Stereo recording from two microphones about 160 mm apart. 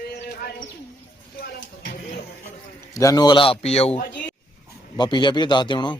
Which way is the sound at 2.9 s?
20° left (ahead or behind).